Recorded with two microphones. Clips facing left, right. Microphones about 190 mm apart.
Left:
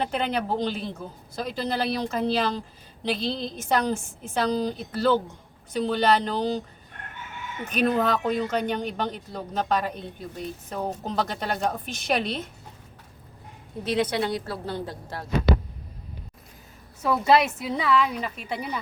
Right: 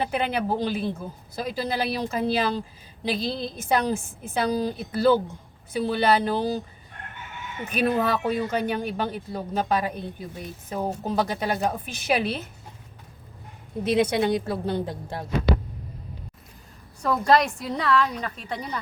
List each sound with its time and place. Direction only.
0.0 s speech: 10° right (ahead or behind)
7.7 s speech: 10° right (ahead or behind)
13.9 s a woman's voice: 15° right (ahead or behind)
17.0 s a woman's voice: 5° left (ahead or behind)